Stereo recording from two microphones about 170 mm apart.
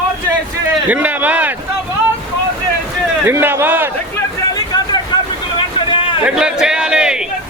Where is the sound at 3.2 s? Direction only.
15° right (ahead or behind).